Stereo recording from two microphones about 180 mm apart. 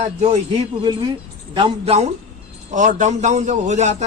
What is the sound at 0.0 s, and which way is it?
Speech, 40° right (ahead or behind).